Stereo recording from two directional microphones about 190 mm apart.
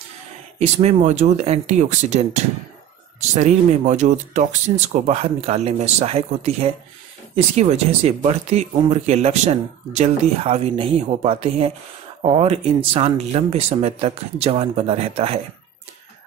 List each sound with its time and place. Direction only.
0.6 s speech: 35° right (ahead or behind)